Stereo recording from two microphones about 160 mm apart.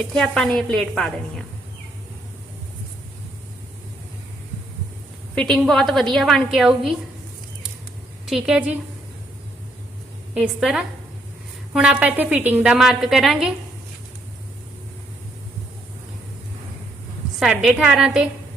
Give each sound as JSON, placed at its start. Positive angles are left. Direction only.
{"t": 0.1, "sound": "a woman's voice", "side_deg": 5}
{"t": 5.3, "sound": "a woman's voice", "side_deg": 5}
{"t": 8.3, "sound": "a woman's voice", "side_deg": -5}
{"t": 10.3, "sound": "a woman's voice", "side_deg": -5}
{"t": 17.4, "sound": "a woman's voice", "side_deg": -5}